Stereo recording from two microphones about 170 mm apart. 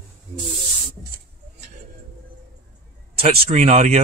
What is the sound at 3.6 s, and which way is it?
Speech, 40° right (ahead or behind).